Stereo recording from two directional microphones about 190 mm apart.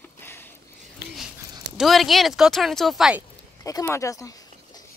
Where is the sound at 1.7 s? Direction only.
Centre (ahead or behind).